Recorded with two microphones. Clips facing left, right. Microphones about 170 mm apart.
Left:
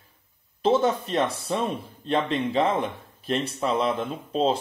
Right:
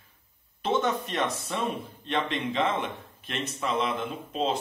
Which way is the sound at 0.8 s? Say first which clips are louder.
Left 5 dB; 30° left (ahead or behind).